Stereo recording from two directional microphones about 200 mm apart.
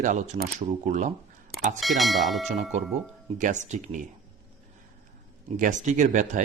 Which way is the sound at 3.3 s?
40° right (ahead or behind).